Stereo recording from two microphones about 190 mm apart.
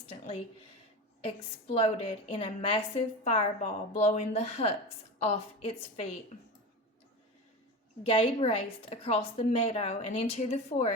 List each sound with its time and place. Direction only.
0.1 s a sound: 30° left (ahead or behind)
1.7 s a woman's voice: 30° left (ahead or behind)
8.0 s a woman's voice: 30° left (ahead or behind)